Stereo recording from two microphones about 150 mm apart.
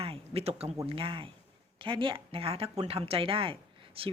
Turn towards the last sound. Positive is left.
turn(degrees=-35)  # may be behind; listen again after turning